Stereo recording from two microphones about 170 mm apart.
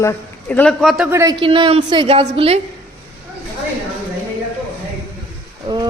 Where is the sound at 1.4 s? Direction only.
30° right (ahead or behind).